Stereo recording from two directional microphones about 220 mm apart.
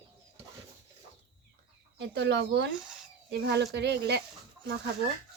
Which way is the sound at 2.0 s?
50° right (ahead or behind).